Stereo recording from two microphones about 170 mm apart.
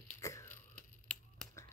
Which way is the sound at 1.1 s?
5° left (ahead or behind).